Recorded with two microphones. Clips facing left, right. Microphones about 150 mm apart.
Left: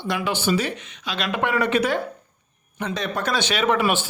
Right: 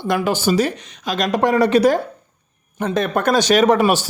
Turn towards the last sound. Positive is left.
turn(degrees=-40)  # may be behind; listen again after turning